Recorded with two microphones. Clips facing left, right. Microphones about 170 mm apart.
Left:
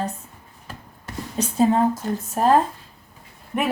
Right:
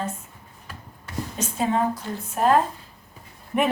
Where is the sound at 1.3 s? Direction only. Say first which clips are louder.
Left 6 dB; 35° left (ahead or behind).